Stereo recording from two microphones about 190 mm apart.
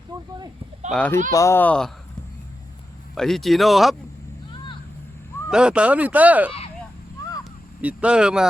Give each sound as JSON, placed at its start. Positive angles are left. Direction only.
{"t": 0.9, "sound": "speech", "side_deg": 5}
{"t": 3.2, "sound": "speech", "side_deg": 0}
{"t": 5.5, "sound": "speech", "side_deg": -5}
{"t": 7.8, "sound": "speech", "side_deg": -5}